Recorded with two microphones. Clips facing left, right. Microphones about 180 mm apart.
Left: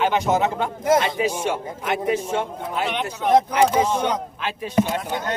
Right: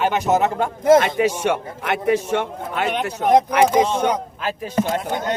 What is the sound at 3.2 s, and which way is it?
A man's voice, 50° right (ahead or behind).